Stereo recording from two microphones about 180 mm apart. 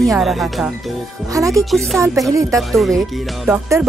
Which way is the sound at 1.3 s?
20° right (ahead or behind).